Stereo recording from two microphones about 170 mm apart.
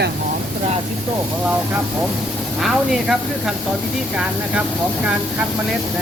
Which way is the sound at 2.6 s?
Centre (ahead or behind).